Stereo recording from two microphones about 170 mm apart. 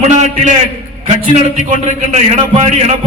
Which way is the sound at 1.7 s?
40° right (ahead or behind).